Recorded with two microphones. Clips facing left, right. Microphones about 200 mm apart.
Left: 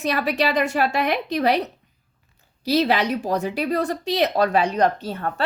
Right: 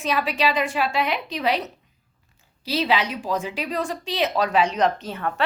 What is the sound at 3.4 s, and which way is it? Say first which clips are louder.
A woman's voice: left 5 dB; 55° left (ahead or behind).